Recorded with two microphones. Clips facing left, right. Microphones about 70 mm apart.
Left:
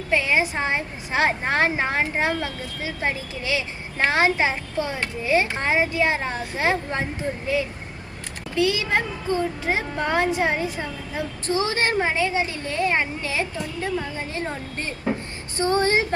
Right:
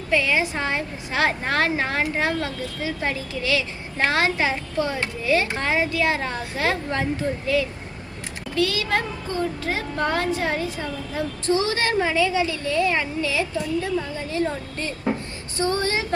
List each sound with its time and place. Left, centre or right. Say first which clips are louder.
0.1 s a woman's voice: even; left